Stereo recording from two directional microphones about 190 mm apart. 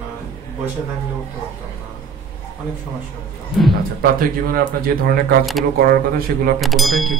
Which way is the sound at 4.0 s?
50° right (ahead or behind).